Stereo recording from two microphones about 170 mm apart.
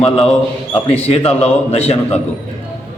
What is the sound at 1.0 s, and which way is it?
A man's voice, 35° left (ahead or behind).